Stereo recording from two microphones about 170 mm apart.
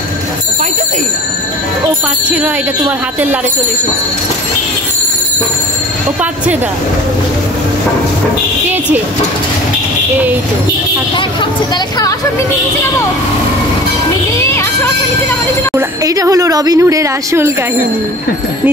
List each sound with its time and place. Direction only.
15.7 s speech: 20° right (ahead or behind)